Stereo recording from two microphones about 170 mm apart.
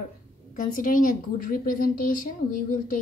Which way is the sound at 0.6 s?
50° left (ahead or behind).